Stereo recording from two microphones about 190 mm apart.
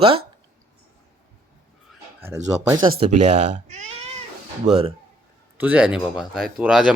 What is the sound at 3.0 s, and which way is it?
Speech, 35° right (ahead or behind).